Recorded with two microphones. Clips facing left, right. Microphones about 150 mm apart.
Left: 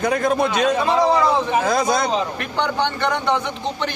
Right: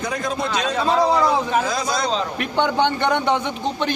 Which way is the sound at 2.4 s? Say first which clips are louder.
Right 2 dB; 20° right (ahead or behind).